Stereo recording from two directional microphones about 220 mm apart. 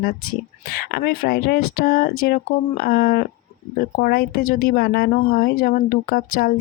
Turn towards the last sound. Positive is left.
turn(degrees=40)  # may be behind; listen again after turning